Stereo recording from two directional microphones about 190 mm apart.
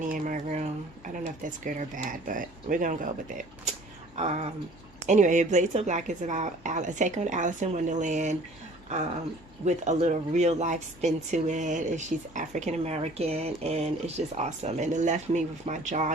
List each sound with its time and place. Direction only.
0.0 s speech: 45° right (ahead or behind)
9.6 s speech: 40° right (ahead or behind)